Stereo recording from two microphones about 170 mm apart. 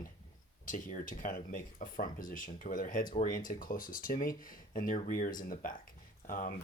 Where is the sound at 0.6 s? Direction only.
50° left (ahead or behind).